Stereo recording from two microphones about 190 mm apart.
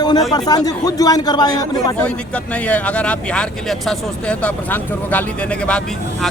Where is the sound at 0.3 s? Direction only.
20° left (ahead or behind).